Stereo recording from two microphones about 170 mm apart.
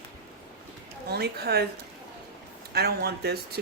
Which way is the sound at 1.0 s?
70° right (ahead or behind).